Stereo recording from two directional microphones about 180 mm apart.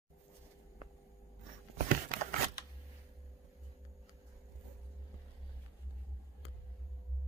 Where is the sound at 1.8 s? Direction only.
55° right (ahead or behind).